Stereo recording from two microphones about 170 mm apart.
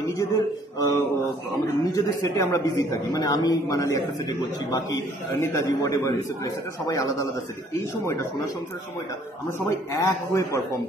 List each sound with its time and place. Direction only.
0.0 s a sound: 20° left (ahead or behind)
1.8 s a man's voice: 20° left (ahead or behind)
5.4 s a man's voice: 20° left (ahead or behind)
9.7 s speech: 15° left (ahead or behind)